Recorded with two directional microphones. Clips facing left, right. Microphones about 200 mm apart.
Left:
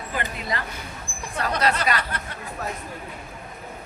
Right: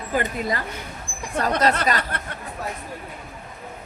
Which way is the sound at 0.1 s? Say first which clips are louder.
Right 6 dB; 45° right (ahead or behind).